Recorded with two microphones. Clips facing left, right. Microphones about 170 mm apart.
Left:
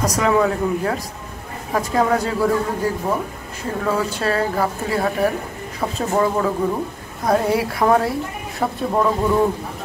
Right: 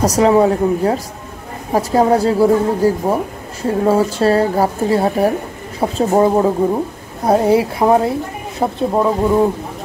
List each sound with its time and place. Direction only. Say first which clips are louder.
0.0 s a woman's voice: right 6 dB; 30° right (ahead or behind)